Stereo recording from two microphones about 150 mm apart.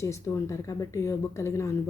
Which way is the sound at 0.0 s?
20° left (ahead or behind).